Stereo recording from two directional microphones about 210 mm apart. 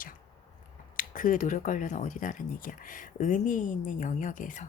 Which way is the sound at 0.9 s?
40° left (ahead or behind).